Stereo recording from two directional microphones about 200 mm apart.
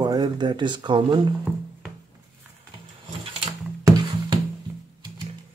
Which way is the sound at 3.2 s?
25° right (ahead or behind).